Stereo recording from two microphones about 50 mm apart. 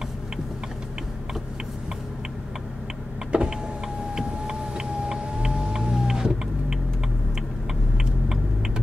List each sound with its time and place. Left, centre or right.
3.3 s power windows: centre
4.1 s siren: centre
8.0 s typing: centre